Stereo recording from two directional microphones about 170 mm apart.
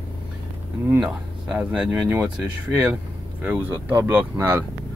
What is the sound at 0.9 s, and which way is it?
Speech, 5° right (ahead or behind).